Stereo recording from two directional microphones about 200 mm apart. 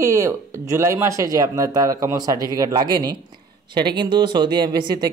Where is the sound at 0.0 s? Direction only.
15° right (ahead or behind).